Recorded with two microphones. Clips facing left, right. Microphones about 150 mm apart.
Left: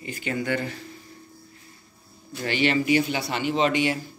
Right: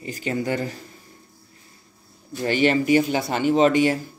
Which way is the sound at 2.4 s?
45° right (ahead or behind).